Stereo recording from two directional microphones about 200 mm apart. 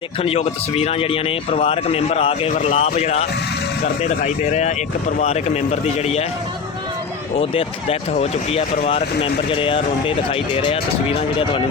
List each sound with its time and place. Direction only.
0.2 s speech: 30° left (ahead or behind)
7.3 s speech: 30° left (ahead or behind)